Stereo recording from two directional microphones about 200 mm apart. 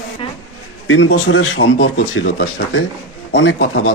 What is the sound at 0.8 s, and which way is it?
Speech, 80° left.